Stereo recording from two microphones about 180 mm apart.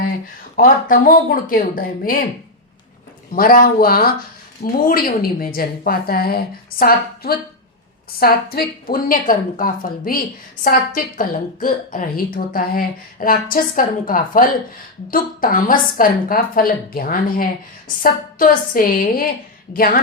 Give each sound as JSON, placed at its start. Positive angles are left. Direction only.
{"t": 0.5, "sound": "a woman's voice", "side_deg": 50}
{"t": 3.3, "sound": "a woman's voice", "side_deg": 55}